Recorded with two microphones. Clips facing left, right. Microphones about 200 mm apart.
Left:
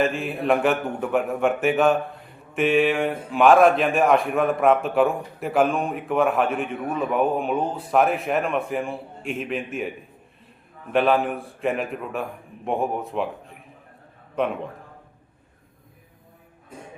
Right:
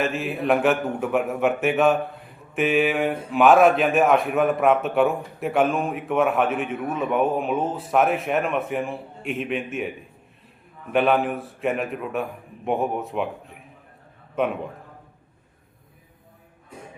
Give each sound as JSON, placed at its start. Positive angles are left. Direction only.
{"t": 0.0, "sound": "speech", "side_deg": 0}
{"t": 10.9, "sound": "speech", "side_deg": 0}